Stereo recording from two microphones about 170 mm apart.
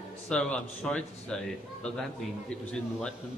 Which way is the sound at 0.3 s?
5° left (ahead or behind).